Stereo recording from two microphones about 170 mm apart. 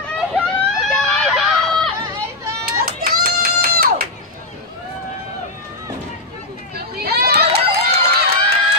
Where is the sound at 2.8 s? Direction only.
60° right (ahead or behind).